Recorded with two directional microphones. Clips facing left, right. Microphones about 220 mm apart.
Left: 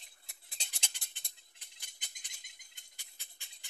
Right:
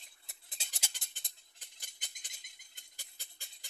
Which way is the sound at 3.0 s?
40° right (ahead or behind).